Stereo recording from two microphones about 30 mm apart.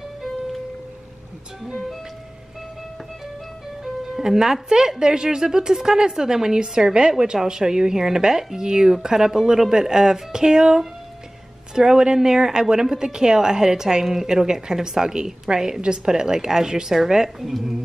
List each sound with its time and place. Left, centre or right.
1.7 s music: centre
4.2 s a woman's voice: centre